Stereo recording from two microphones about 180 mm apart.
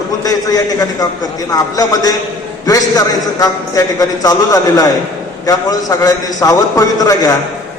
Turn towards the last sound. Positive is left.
turn(degrees=20)  # may be behind; listen again after turning